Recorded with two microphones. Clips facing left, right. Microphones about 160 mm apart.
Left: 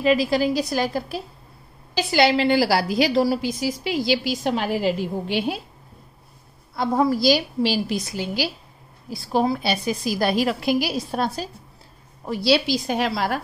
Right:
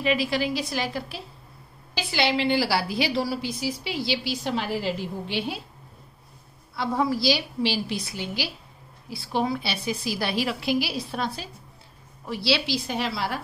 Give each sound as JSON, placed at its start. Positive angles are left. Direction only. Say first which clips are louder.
{"t": 0.0, "sound": "a woman's voice", "louder": "left 5 dB", "side_deg": 40}
{"t": 6.7, "sound": "a woman's voice", "louder": "left 5 dB", "side_deg": 45}